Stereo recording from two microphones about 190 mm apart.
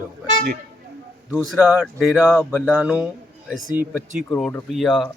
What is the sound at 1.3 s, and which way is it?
A man's voice, 5° right (ahead or behind).